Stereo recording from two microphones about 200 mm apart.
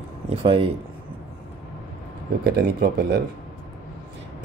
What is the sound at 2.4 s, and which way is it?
Speech, 50° right (ahead or behind).